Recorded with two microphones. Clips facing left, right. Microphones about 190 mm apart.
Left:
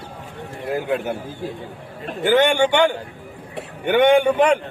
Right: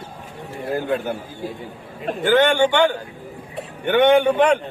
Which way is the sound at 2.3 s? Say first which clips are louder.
Even; 15° left (ahead or behind).